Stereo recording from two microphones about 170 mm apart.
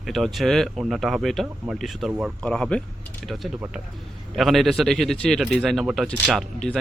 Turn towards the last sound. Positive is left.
turn(degrees=5)  # may be behind; listen again after turning